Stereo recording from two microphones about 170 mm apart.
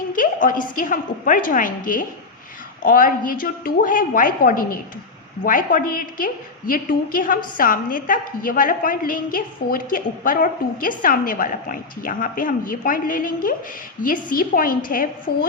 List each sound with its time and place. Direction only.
0.1 s a woman's voice: 55° left (ahead or behind)